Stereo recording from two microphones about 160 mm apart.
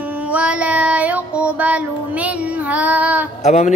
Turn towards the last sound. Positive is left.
turn(degrees=45)  # may be behind; listen again after turning